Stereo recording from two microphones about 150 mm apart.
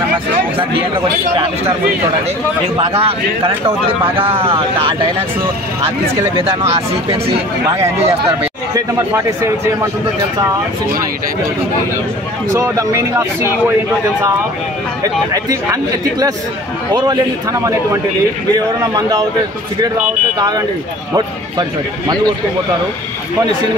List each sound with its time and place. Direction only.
0.3 s a sound: 35° right (ahead or behind)
2.8 s speech: 40° right (ahead or behind)
12.5 s a man's voice: 20° right (ahead or behind)
15.3 s a man's voice: 25° right (ahead or behind)
20.3 s a man's voice: 25° right (ahead or behind)